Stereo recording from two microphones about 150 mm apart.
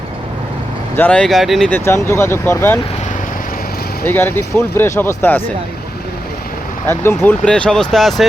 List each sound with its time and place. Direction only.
0.9 s speech: 10° left (ahead or behind)
1.7 s speech: 15° left (ahead or behind)
4.1 s speech: 15° left (ahead or behind)
6.8 s speech: 15° left (ahead or behind)